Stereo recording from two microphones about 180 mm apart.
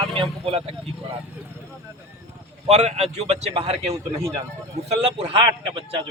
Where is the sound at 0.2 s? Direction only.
30° right (ahead or behind).